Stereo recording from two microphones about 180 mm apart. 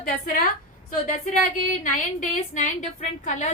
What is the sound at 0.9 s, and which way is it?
A woman's voice, 45° left (ahead or behind).